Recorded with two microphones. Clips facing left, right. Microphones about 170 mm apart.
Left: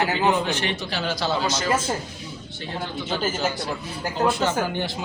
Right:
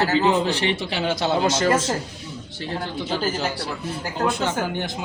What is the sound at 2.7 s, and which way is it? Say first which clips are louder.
Speech: right 1 dB; 35° right (ahead or behind).